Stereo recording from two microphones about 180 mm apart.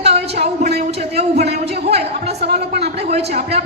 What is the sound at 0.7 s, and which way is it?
Speech, 65° right (ahead or behind).